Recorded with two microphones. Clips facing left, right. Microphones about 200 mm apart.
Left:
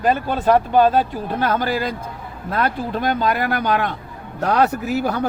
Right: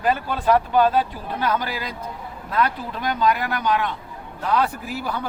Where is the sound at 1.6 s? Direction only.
55° left (ahead or behind).